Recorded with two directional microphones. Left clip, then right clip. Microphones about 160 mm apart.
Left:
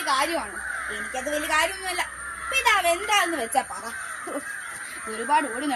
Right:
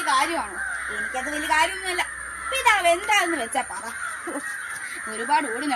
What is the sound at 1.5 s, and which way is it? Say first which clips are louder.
A woman's voice: right 4 dB; 25° left (ahead or behind).